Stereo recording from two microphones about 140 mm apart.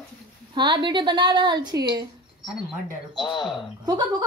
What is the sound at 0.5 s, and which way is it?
A woman's voice, 35° right (ahead or behind).